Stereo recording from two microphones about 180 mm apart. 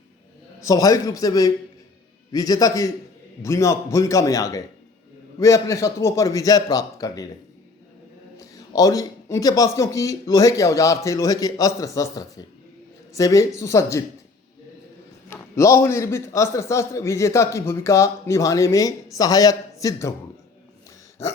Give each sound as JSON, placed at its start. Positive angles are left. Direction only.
{"t": 0.6, "sound": "a man's voice", "side_deg": 20}
{"t": 8.4, "sound": "a man's voice", "side_deg": 20}
{"t": 15.3, "sound": "a man's voice", "side_deg": 15}